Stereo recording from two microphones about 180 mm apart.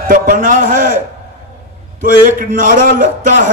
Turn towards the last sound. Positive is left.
turn(degrees=-50)  # may be behind; listen again after turning